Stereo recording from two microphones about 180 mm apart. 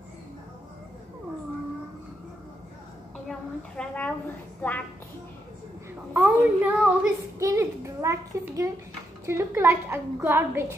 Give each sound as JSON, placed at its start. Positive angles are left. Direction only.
{"t": 3.3, "sound": "a sound", "side_deg": 5}
{"t": 4.6, "sound": "a woman's voice", "side_deg": 10}
{"t": 6.1, "sound": "a woman's voice", "side_deg": -10}